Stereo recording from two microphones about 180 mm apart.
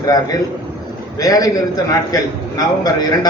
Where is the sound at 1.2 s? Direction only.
20° left (ahead or behind).